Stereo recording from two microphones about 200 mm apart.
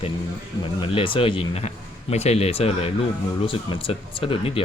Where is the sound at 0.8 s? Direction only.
25° left (ahead or behind).